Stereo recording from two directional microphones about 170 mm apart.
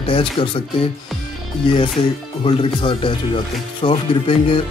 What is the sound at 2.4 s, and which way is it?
Speech, 30° left (ahead or behind).